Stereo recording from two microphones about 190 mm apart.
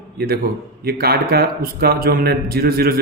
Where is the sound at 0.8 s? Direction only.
55° right (ahead or behind).